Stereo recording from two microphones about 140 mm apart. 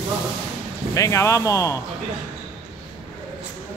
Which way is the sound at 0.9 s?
20° left (ahead or behind).